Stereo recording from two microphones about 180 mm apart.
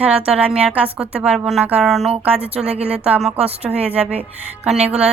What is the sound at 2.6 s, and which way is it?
Speech, 35° right (ahead or behind).